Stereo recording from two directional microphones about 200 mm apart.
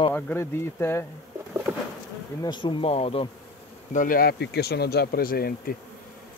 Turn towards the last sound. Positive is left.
turn(degrees=50)  # may be behind; listen again after turning